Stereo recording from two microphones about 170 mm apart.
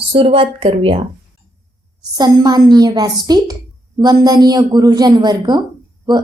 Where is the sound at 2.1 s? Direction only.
25° right (ahead or behind).